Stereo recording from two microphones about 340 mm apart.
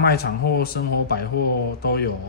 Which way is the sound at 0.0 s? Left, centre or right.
Left.